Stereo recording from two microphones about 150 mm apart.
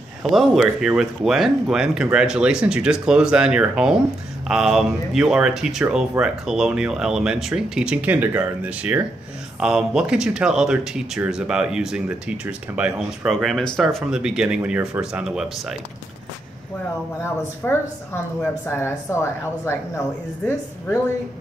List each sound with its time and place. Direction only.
0.2 s speech: centre (ahead or behind)
17.2 s a woman's voice: 15° left (ahead or behind)